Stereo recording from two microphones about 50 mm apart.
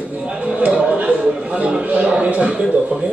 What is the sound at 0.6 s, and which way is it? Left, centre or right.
Speech, right.